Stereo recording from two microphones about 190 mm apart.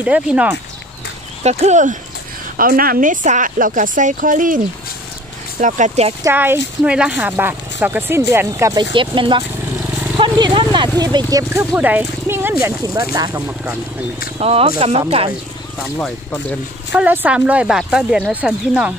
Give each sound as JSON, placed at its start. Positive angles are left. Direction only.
{"t": 0.0, "sound": "speech", "side_deg": -5}
{"t": 1.4, "sound": "a woman's voice", "side_deg": -35}
{"t": 5.6, "sound": "speech", "side_deg": -40}
{"t": 6.2, "sound": "speech", "side_deg": -10}
{"t": 8.9, "sound": "speech", "side_deg": -25}
{"t": 14.4, "sound": "speech", "side_deg": -30}
{"t": 16.0, "sound": "speech", "side_deg": 5}
{"t": 16.9, "sound": "speech", "side_deg": -10}